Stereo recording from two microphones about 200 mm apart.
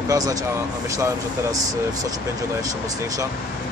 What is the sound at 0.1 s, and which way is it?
Speech, 15° right (ahead or behind).